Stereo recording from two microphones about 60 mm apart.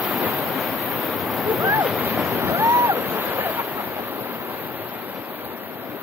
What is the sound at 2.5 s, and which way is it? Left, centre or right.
Waves, right.